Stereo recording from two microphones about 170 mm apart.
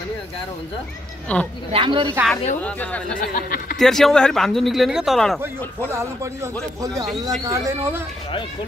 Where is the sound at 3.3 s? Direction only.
55° left (ahead or behind).